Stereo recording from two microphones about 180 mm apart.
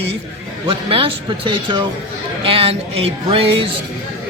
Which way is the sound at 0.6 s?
30° right (ahead or behind).